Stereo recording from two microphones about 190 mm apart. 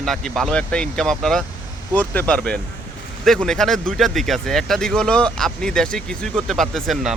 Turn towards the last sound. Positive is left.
turn(degrees=0)  # may be behind; listen again after turning